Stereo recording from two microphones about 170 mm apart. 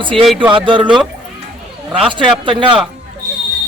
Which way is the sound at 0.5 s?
30° right (ahead or behind).